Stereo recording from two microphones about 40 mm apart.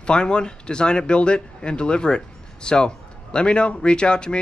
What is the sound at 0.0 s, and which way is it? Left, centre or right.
Speech, left.